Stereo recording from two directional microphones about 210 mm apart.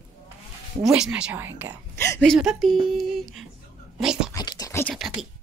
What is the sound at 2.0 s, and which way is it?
Speech, 10° left (ahead or behind).